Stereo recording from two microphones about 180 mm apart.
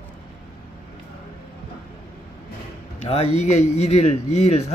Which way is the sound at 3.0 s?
35° left (ahead or behind).